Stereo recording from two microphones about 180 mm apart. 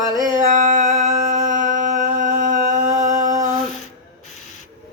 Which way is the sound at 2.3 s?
45° right (ahead or behind).